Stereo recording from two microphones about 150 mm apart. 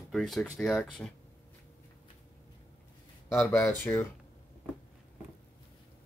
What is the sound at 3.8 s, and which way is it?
Speech, 15° left (ahead or behind).